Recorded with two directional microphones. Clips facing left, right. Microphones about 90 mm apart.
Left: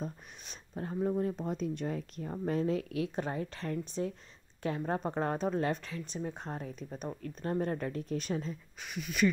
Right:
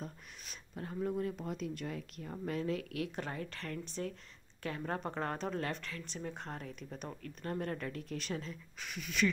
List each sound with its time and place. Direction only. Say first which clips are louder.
0.0 s speech: left 5 dB; 25° left (ahead or behind)